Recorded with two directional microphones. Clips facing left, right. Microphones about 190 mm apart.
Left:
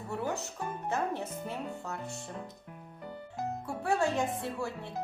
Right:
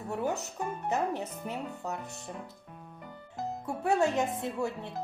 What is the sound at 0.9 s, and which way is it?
Speech, 20° right (ahead or behind).